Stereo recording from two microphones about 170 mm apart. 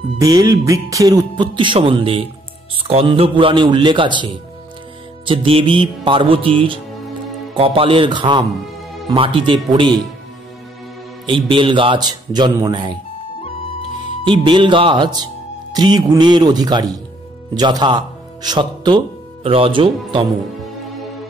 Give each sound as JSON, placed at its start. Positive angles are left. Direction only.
{"t": 0.2, "sound": "speech", "side_deg": -20}
{"t": 5.2, "sound": "music", "side_deg": -30}
{"t": 9.7, "sound": "speech", "side_deg": -25}
{"t": 11.2, "sound": "speech", "side_deg": -30}
{"t": 14.2, "sound": "speech", "side_deg": -30}